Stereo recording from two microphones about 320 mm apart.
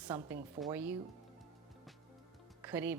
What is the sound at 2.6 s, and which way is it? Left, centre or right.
Speech, centre.